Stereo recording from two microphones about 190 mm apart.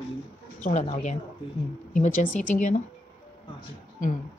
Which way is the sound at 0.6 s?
40° left (ahead or behind).